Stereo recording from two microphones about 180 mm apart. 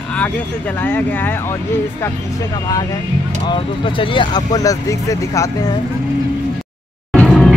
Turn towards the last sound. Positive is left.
turn(degrees=5)  # may be behind; listen again after turning